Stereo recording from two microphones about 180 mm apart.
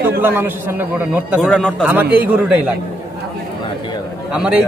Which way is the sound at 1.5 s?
5° left (ahead or behind).